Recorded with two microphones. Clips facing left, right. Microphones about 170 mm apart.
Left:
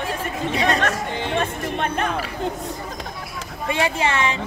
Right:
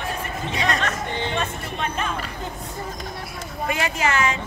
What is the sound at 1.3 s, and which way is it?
Music, 55° left (ahead or behind).